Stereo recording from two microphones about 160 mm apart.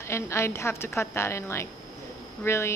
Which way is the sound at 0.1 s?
15° left (ahead or behind).